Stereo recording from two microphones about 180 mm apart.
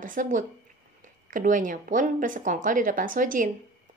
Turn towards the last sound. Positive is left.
turn(degrees=-50)  # may be behind; listen again after turning